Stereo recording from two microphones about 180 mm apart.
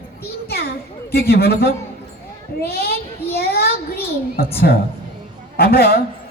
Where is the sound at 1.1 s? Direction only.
60° left (ahead or behind).